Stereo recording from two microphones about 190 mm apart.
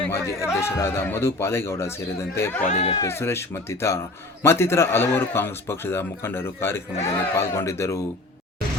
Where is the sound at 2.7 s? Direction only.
30° left (ahead or behind).